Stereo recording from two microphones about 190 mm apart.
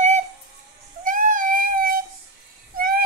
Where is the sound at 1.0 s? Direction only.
45° right (ahead or behind).